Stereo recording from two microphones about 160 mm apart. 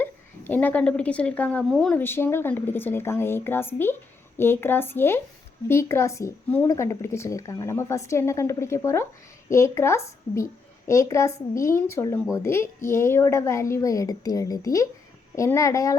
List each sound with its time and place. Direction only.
0.0 s a woman's voice: 10° left (ahead or behind)